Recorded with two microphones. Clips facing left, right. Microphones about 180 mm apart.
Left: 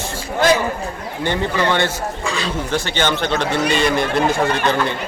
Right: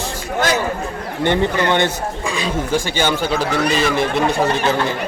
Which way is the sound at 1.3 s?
20° right (ahead or behind).